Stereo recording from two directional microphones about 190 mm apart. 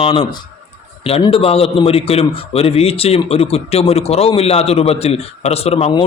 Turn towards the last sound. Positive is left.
turn(degrees=30)  # may be behind; listen again after turning